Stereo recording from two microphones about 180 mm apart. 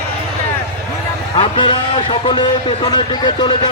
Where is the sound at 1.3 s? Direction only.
30° left (ahead or behind).